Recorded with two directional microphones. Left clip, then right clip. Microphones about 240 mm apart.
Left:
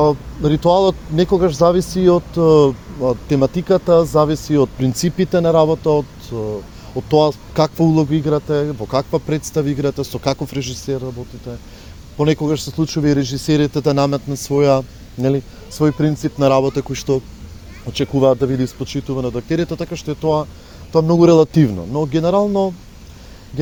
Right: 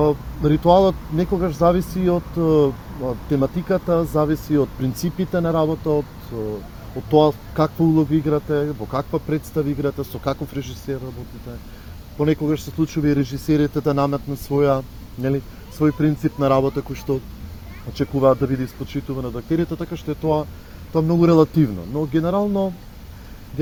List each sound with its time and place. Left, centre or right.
0.0 s speech: left
7.1 s speech: left
12.1 s speech: left